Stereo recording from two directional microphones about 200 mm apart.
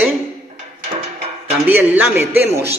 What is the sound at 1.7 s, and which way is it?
Speech, 10° right (ahead or behind).